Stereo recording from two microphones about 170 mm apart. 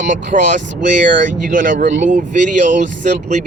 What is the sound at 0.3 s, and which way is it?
Speech, 50° right (ahead or behind).